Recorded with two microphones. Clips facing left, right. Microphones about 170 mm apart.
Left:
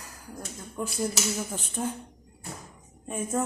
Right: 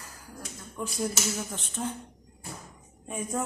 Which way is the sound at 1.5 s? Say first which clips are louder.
Left 2 dB; 10° left (ahead or behind).